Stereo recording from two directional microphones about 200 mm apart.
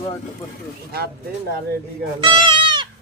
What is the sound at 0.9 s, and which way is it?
Speech, 50° right (ahead or behind).